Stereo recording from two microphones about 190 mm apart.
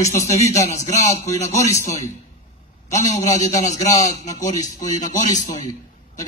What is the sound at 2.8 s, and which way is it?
A man's voice, 40° left (ahead or behind).